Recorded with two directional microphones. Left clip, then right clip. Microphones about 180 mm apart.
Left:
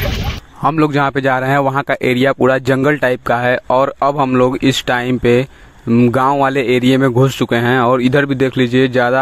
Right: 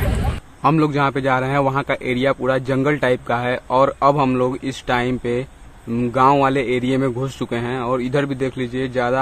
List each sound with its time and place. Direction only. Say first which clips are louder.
0.7 s speech: left 3 dB; 50° left (ahead or behind)
5.9 s speech: left 10 dB; 30° left (ahead or behind)
6.4 s speech: left 5 dB; 50° left (ahead or behind)